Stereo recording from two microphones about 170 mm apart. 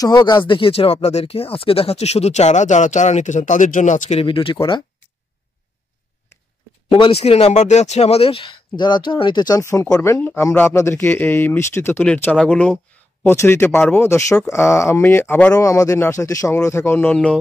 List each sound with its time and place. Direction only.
0.0 s speech: 25° left (ahead or behind)
6.9 s speech: 35° left (ahead or behind); by 17.4 s 5° left (ahead or behind)